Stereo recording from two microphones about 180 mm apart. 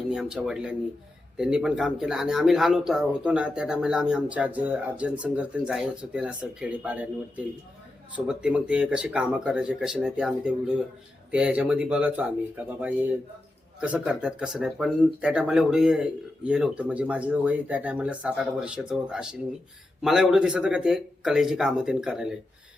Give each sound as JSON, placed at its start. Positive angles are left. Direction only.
{"t": 0.1, "sound": "speech", "side_deg": -5}